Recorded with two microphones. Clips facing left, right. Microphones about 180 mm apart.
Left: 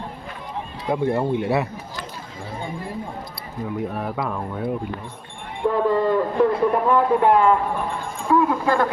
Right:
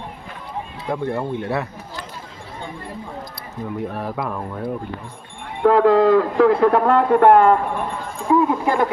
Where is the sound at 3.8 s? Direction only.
Centre (ahead or behind).